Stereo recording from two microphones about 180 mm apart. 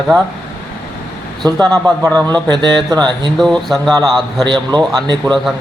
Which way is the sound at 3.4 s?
Centre (ahead or behind).